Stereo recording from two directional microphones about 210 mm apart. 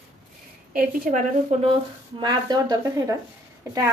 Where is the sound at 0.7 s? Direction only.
40° right (ahead or behind).